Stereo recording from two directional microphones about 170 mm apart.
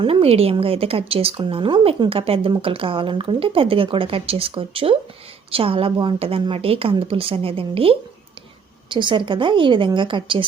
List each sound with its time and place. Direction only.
0.0 s a woman's voice: 35° right (ahead or behind)